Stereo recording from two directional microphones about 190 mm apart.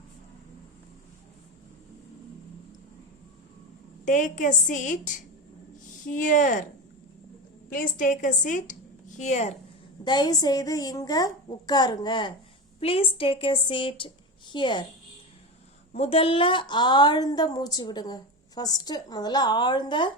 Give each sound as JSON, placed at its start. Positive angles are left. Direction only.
{"t": 4.0, "sound": "a woman's voice", "side_deg": 40}
{"t": 7.7, "sound": "a woman's voice", "side_deg": 45}
{"t": 10.0, "sound": "a woman's voice", "side_deg": 25}
{"t": 15.9, "sound": "a woman's voice", "side_deg": 30}